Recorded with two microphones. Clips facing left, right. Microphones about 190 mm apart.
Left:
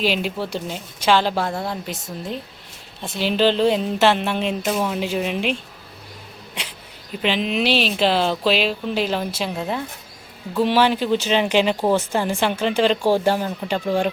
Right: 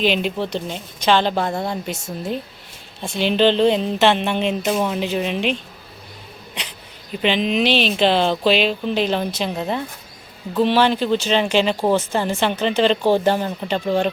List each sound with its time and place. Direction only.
0.0 s speech: 5° left (ahead or behind)